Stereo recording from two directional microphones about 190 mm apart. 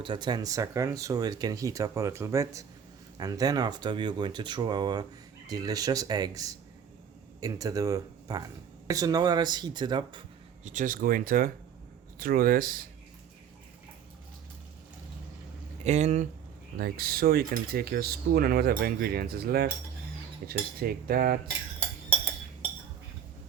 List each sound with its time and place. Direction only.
0.0 s speech: 25° right (ahead or behind)
10.6 s cutlery: 40° right (ahead or behind)
15.8 s speech: 35° right (ahead or behind)
16.7 s cutlery: 50° right (ahead or behind)